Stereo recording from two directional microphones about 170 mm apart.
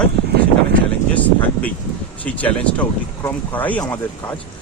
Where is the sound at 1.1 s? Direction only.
10° left (ahead or behind).